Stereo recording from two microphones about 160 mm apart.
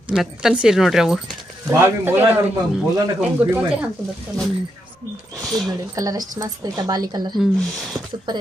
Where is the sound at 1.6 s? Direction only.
15° right (ahead or behind).